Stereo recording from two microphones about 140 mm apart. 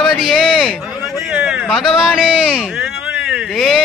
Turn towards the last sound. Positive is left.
turn(degrees=0)  # may be behind; listen again after turning